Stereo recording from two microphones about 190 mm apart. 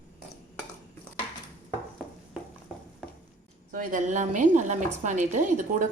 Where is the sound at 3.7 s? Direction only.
45° right (ahead or behind).